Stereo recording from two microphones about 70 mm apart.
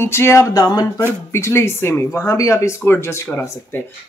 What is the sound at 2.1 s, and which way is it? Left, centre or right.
Speech, left.